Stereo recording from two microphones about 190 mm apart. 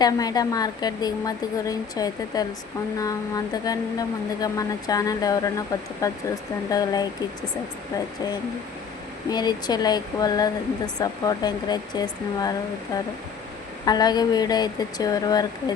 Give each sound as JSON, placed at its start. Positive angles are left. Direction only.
{"t": 0.0, "sound": "speech", "side_deg": 20}
{"t": 9.3, "sound": "speech", "side_deg": 20}
{"t": 13.8, "sound": "speech", "side_deg": 20}